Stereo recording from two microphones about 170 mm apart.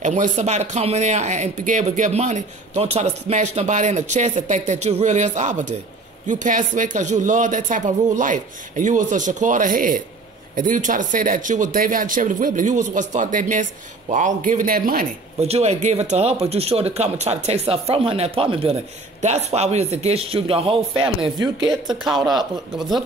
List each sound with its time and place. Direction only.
0.0 s speech: 45° right (ahead or behind)
15.4 s speech: 40° right (ahead or behind)
21.5 s speech: centre (ahead or behind)